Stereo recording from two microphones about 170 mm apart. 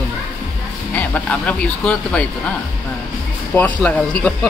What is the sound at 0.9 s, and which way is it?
Speech, 10° left (ahead or behind).